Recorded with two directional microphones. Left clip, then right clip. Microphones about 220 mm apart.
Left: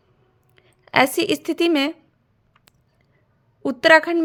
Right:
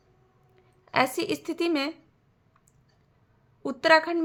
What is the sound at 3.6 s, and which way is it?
Speech, 35° left (ahead or behind).